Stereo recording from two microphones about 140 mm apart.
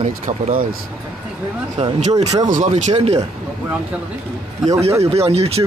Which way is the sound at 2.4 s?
60° right (ahead or behind).